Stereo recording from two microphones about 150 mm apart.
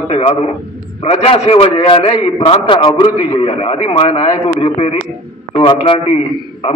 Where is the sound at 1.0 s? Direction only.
40° left (ahead or behind).